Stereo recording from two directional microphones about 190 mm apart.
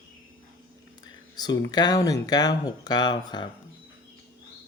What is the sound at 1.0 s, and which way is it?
Speech, 20° left (ahead or behind).